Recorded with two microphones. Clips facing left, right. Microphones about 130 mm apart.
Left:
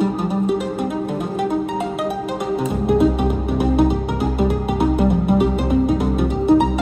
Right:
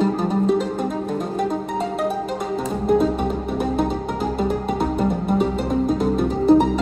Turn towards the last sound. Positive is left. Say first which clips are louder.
# even
turn(degrees=5)  # may be behind; listen again after turning